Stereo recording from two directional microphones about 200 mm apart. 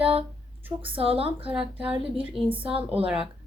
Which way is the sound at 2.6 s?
30° right (ahead or behind).